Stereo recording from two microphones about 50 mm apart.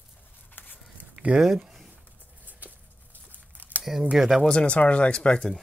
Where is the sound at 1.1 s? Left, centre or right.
Right.